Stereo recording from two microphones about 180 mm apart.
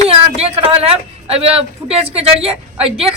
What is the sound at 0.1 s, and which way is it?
A woman's voice, 35° right (ahead or behind).